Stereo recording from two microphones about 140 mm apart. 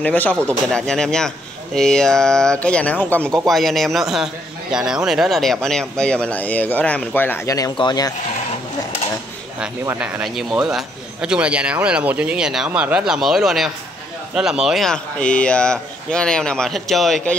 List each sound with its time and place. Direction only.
0.0 s a man's voice: 10° left (ahead or behind); by 8.1 s 30° left (ahead or behind)
9.8 s a man's voice: 10° right (ahead or behind)